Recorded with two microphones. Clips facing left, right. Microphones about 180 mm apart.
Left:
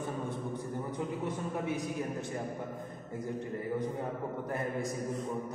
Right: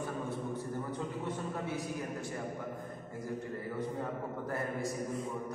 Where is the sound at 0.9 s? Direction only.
15° left (ahead or behind).